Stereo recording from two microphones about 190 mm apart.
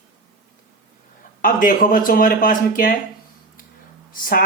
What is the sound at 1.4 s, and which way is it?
Speech, 45° left (ahead or behind).